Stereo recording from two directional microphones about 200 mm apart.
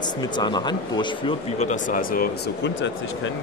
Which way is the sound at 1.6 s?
40° left (ahead or behind).